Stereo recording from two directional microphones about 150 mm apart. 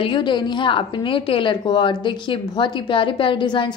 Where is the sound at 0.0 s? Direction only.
35° left (ahead or behind).